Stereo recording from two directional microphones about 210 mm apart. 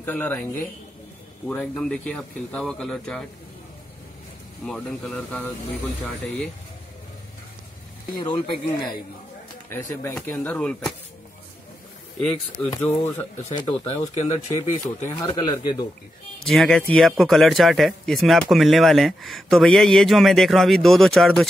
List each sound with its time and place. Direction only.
0.0 s speech: 10° left (ahead or behind)
4.6 s speech: centre (ahead or behind)
8.2 s speech: 20° left (ahead or behind)
9.7 s speech: 10° left (ahead or behind)
12.2 s speech: 5° left (ahead or behind)
13.5 s speech: 25° left (ahead or behind)
15.0 s speech: 20° left (ahead or behind)
16.4 s speech: 5° left (ahead or behind)